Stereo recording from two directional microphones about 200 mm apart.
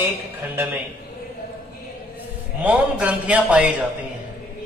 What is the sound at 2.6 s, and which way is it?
A man's voice, 5° right (ahead or behind).